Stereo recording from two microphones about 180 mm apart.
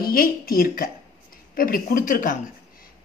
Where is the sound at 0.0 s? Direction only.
55° left (ahead or behind).